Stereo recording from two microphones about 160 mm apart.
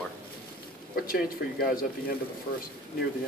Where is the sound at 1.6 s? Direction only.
60° left (ahead or behind).